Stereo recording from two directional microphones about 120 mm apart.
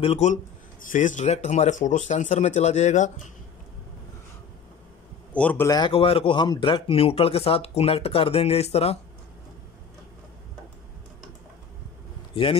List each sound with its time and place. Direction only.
0.0 s speech: 55° left (ahead or behind)
0.8 s speech: 90° left
5.3 s speech: 10° left (ahead or behind)
5.7 s speech: 35° left (ahead or behind)
5.9 s speech: 50° left (ahead or behind)